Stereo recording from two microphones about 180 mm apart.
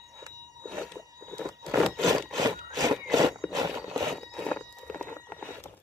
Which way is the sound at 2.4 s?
20° right (ahead or behind).